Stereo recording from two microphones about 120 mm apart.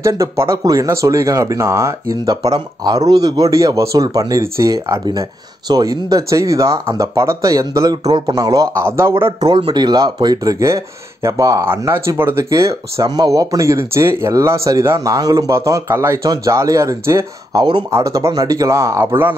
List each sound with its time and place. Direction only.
0.0 s speech: 25° right (ahead or behind)
9.4 s speech: 35° right (ahead or behind)